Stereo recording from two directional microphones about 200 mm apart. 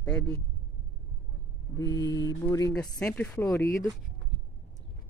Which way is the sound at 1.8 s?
15° left (ahead or behind).